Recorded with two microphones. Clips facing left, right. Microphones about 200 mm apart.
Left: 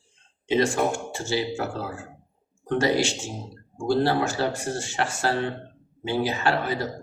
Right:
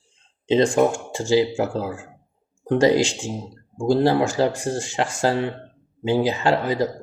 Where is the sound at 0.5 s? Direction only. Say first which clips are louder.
Right 5 dB; 15° right (ahead or behind).